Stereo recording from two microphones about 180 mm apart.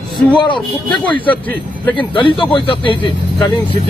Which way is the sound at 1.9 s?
25° left (ahead or behind).